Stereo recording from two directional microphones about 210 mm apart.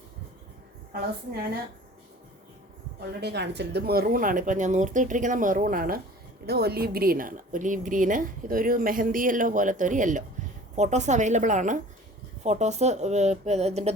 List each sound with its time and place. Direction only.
3.2 s a woman's voice: 55° right (ahead or behind); by 13.9 s 30° right (ahead or behind)